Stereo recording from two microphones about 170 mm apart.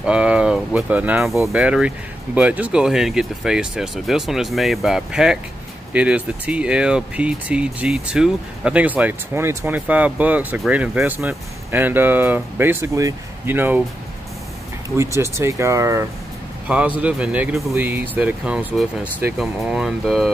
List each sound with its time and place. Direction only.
0.0 s speech: 5° right (ahead or behind)
15.0 s a man's voice: 15° right (ahead or behind); by 20.3 s centre (ahead or behind)